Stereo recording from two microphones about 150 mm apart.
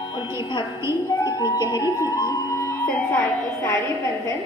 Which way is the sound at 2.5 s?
15° left (ahead or behind).